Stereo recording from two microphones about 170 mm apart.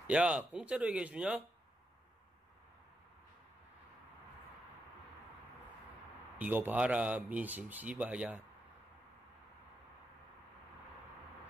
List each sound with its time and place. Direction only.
0.0 s speech: 5° right (ahead or behind)
6.3 s speech: 10° right (ahead or behind)